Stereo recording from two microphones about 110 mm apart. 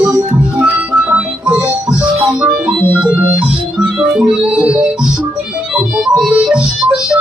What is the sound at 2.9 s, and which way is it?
Organ, 10° right (ahead or behind).